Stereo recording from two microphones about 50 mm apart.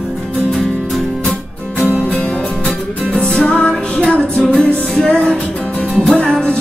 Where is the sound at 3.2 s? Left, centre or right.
Centre.